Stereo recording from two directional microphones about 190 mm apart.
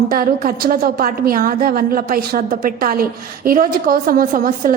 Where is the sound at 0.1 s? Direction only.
50° right (ahead or behind).